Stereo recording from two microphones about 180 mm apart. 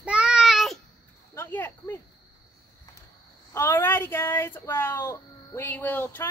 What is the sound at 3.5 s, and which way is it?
A child's voice, 15° left (ahead or behind).